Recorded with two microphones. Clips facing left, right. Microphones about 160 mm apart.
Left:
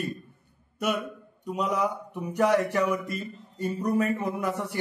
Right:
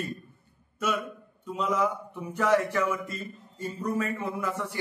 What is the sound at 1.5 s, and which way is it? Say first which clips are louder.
Mantra: even; 15° left (ahead or behind).